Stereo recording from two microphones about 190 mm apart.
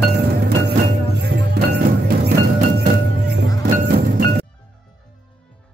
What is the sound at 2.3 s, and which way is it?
Music, 50° right (ahead or behind).